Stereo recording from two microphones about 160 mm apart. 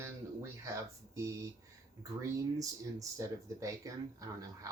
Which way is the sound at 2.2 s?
20° right (ahead or behind).